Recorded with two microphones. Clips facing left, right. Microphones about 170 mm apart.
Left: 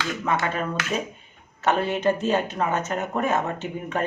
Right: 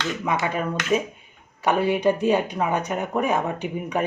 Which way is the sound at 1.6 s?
10° right (ahead or behind).